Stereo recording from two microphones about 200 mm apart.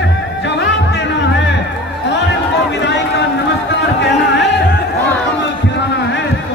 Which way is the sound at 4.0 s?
60° left (ahead or behind).